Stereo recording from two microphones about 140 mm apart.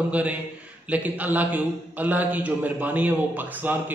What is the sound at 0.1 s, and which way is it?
A man's voice, 10° right (ahead or behind).